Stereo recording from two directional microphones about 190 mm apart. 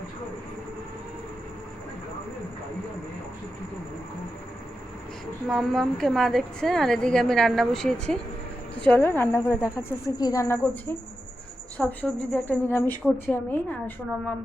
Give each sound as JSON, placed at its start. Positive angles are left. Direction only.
{"t": 5.5, "sound": "a woman's voice", "side_deg": 0}
{"t": 11.8, "sound": "a woman's voice", "side_deg": 10}